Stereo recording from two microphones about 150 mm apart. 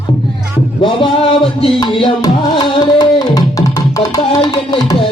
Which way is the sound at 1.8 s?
35° left (ahead or behind).